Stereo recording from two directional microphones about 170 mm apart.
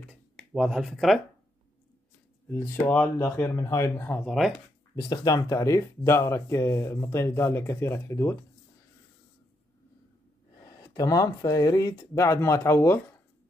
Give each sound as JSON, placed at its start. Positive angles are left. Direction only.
{"t": 0.4, "sound": "speech", "side_deg": 0}
{"t": 2.5, "sound": "speech", "side_deg": 15}
{"t": 10.6, "sound": "speech", "side_deg": 20}